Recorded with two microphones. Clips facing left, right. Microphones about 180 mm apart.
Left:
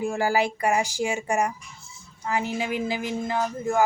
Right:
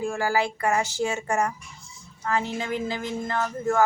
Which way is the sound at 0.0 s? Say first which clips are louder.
Left 1 dB; 20° left (ahead or behind).